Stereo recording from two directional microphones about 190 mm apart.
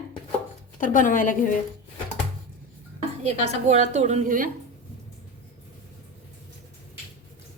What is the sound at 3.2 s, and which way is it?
A woman's voice, 35° right (ahead or behind).